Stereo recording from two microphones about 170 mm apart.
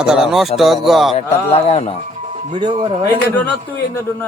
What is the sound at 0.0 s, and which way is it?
Speech, 5° right (ahead or behind).